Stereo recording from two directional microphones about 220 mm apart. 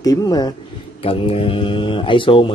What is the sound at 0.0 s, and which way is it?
Speech, 15° left (ahead or behind).